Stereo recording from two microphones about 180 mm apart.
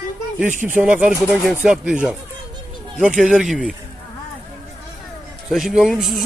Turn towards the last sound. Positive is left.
turn(degrees=0)  # may be behind; listen again after turning